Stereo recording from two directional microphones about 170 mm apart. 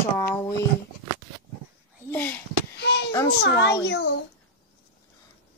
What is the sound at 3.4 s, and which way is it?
Speech, 80° left.